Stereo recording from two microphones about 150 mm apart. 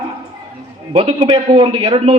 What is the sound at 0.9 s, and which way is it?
Speech, 35° right (ahead or behind).